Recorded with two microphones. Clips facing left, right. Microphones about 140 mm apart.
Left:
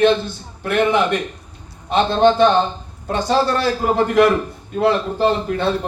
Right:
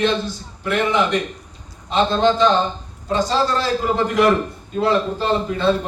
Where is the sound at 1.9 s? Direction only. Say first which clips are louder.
Left 2 dB; 55° left (ahead or behind).